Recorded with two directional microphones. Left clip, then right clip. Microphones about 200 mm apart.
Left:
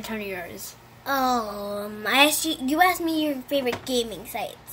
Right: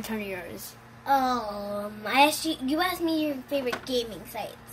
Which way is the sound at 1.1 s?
40° left (ahead or behind).